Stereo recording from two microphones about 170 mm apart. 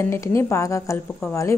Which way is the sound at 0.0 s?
15° left (ahead or behind).